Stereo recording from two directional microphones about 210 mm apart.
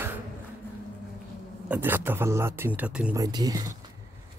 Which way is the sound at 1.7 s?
10° right (ahead or behind).